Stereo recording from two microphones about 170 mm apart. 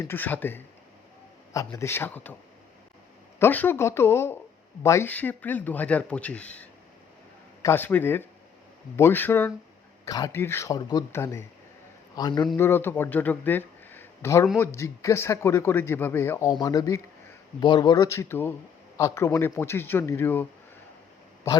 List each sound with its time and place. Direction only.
0.0 s speech: 10° left (ahead or behind)
3.3 s speech: 10° left (ahead or behind)
12.1 s speech: 25° left (ahead or behind)
12.5 s speech: 15° left (ahead or behind)